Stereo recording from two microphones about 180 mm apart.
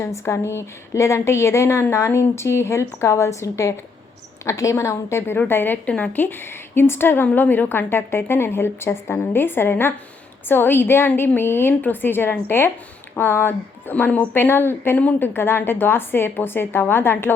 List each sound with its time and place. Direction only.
0.0 s a woman's voice: 15° left (ahead or behind)